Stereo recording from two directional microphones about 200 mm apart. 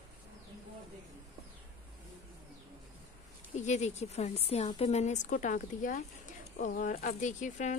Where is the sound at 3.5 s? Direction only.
35° left (ahead or behind).